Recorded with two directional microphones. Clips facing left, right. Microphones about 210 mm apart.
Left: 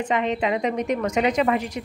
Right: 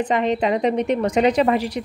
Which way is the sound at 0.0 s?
35° right (ahead or behind).